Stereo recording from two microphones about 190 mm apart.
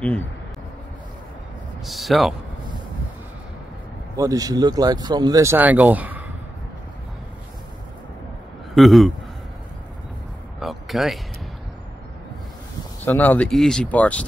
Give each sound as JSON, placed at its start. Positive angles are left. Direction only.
{"t": 1.9, "sound": "speech", "side_deg": 0}
{"t": 4.2, "sound": "speech", "side_deg": -20}
{"t": 8.7, "sound": "speech", "side_deg": 0}
{"t": 10.6, "sound": "speech", "side_deg": 0}
{"t": 13.0, "sound": "speech", "side_deg": 10}